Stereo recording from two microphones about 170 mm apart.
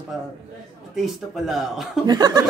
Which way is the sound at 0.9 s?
Centre (ahead or behind).